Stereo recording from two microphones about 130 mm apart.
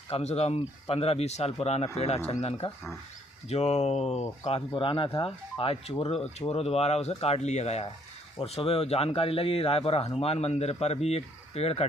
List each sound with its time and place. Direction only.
0.1 s speech: 55° left (ahead or behind)
4.7 s speech: 40° left (ahead or behind)